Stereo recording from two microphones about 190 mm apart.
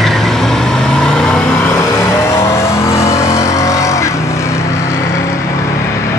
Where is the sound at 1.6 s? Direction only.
15° left (ahead or behind).